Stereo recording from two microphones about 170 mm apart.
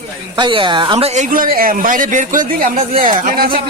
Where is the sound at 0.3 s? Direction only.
30° right (ahead or behind); by 3.6 s 60° right (ahead or behind).